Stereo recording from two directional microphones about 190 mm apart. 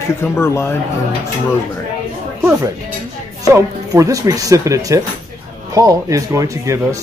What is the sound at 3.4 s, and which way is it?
Speech, 15° right (ahead or behind).